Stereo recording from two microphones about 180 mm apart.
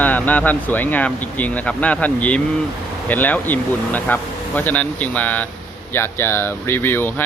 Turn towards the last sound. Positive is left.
turn(degrees=10)  # may be behind; listen again after turning